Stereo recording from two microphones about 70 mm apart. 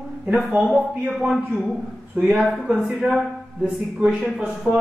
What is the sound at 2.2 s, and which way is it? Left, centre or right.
Speech, centre.